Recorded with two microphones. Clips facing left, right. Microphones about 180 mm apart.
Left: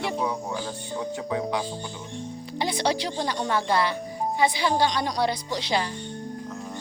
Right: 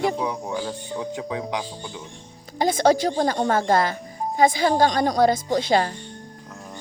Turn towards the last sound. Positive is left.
turn(degrees=-50)  # may be behind; listen again after turning